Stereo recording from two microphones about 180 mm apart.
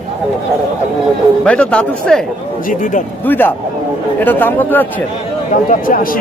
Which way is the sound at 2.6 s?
45° left (ahead or behind).